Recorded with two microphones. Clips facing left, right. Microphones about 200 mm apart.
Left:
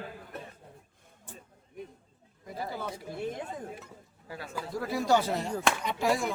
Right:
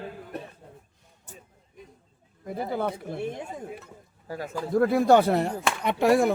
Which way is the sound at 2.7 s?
55° right (ahead or behind).